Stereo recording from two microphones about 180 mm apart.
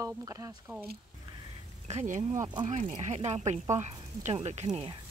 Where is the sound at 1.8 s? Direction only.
40° right (ahead or behind).